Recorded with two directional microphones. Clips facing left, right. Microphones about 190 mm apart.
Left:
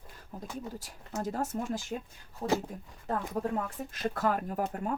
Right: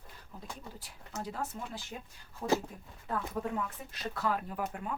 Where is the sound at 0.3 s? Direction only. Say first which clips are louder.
Left 6 dB; 50° left (ahead or behind).